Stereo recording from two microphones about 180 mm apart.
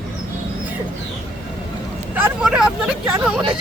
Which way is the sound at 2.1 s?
5° right (ahead or behind).